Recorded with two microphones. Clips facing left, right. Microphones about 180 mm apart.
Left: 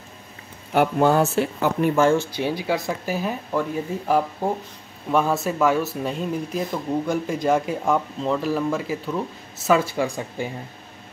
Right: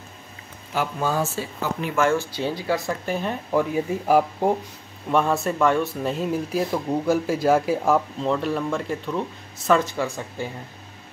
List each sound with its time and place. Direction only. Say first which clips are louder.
0.7 s speech: left 6 dB; 60° left (ahead or behind)
2.0 s speech: left 1 dB; 30° left (ahead or behind)
2.3 s speech: left 1 dB; 15° left (ahead or behind)
3.5 s speech: right 4 dB; 10° right (ahead or behind); by 10.5 s 15° left (ahead or behind)